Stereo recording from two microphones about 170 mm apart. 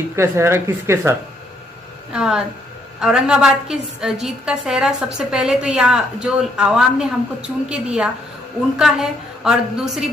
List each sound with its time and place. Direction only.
0.1 s speech: 15° right (ahead or behind)
2.1 s a woman's voice: 5° right (ahead or behind)